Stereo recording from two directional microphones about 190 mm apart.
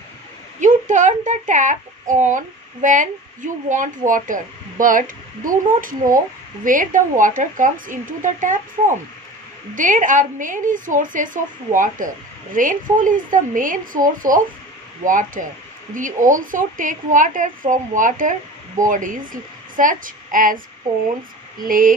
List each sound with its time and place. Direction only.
0.6 s a child's voice: 40° right (ahead or behind)